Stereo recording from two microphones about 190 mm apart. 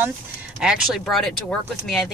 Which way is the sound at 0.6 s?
Centre (ahead or behind).